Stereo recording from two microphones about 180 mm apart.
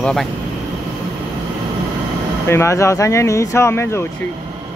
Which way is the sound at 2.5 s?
15° left (ahead or behind).